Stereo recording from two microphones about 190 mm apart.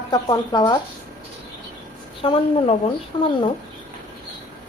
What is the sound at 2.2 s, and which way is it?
Speech, 30° left (ahead or behind).